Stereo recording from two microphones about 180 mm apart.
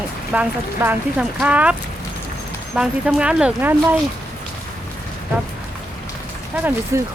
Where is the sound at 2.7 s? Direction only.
5° right (ahead or behind).